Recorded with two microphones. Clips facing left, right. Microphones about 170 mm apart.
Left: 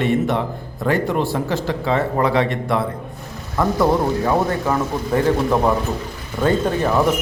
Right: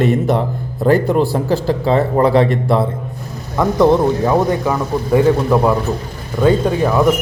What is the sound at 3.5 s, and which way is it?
Speech, 20° right (ahead or behind).